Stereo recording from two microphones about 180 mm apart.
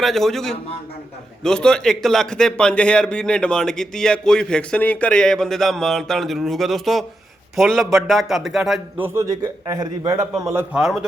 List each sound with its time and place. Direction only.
0.0 s a man's voice: centre (ahead or behind)
9.0 s a man's voice: 15° right (ahead or behind)